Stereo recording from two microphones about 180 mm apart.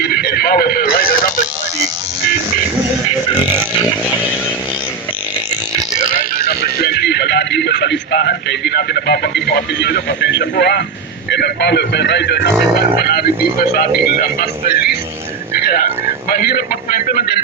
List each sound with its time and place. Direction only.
0.0 s music: 60° left (ahead or behind)
3.3 s a sound: 10° right (ahead or behind)
6.3 s music: 55° left (ahead or behind); by 10.4 s 75° left (ahead or behind)
10.6 s speech: 70° left (ahead or behind); by 14.9 s 55° left (ahead or behind)
15.5 s a sound: 55° left (ahead or behind)
16.3 s speech: 55° left (ahead or behind)